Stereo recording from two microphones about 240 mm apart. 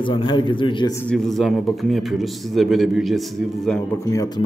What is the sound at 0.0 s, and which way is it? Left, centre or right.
Speech, left.